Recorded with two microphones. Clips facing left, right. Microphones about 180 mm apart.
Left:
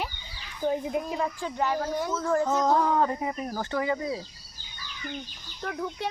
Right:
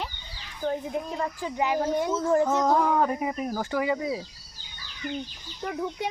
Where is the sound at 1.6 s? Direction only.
20° right (ahead or behind).